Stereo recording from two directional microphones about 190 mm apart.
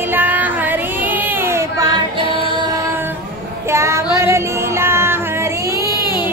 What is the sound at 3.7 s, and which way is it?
Child singing, 15° right (ahead or behind).